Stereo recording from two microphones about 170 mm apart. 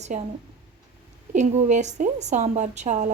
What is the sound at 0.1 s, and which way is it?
Speech, 45° right (ahead or behind).